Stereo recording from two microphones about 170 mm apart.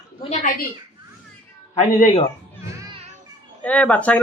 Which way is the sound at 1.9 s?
40° left (ahead or behind).